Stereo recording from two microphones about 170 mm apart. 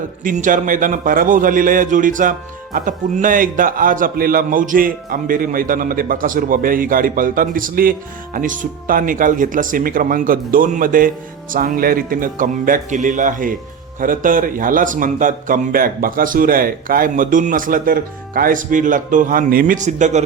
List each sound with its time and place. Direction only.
0.3 s a man's voice: 50° right (ahead or behind)